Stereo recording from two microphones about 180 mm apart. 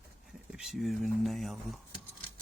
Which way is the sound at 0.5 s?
Centre (ahead or behind).